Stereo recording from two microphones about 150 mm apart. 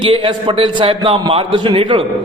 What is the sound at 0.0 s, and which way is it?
A man's voice, 35° right (ahead or behind).